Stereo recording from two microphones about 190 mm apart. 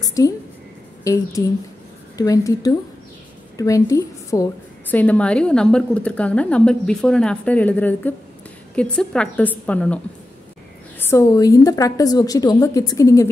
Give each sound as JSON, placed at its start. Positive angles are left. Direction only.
{"t": 0.0, "sound": "a sound", "side_deg": 20}
{"t": 1.0, "sound": "a woman's voice", "side_deg": 15}
{"t": 11.0, "sound": "a woman's voice", "side_deg": 15}